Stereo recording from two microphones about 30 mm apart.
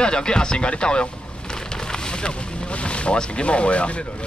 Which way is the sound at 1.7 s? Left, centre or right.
Left.